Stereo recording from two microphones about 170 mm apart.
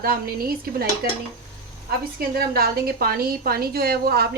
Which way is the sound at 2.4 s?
65° right (ahead or behind).